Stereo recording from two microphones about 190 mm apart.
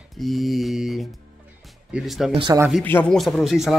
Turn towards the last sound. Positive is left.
turn(degrees=0)  # may be behind; listen again after turning